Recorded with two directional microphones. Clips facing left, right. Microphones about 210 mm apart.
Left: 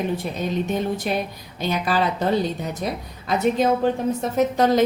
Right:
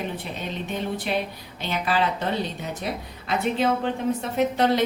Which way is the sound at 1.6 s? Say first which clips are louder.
Left 3 dB; 40° left (ahead or behind).